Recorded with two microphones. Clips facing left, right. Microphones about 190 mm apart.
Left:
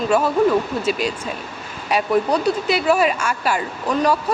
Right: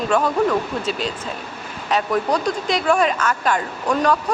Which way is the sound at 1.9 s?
10° left (ahead or behind).